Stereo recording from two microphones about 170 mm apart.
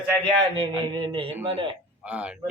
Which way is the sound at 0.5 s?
30° right (ahead or behind).